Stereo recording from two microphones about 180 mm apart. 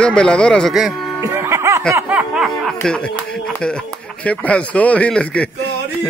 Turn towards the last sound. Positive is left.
turn(degrees=5)  # may be behind; listen again after turning